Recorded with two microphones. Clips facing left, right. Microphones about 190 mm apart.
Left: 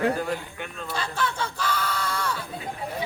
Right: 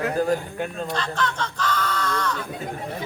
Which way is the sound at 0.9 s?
10° left (ahead or behind).